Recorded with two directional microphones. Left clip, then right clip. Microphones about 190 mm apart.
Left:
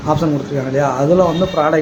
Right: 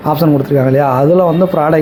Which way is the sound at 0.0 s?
40° right (ahead or behind).